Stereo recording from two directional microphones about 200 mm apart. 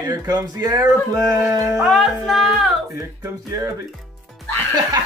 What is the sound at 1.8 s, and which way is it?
Music, centre (ahead or behind).